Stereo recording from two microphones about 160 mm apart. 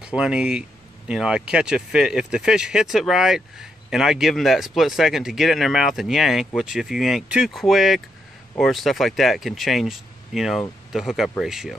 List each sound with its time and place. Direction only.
0.0 s speech: 5° right (ahead or behind)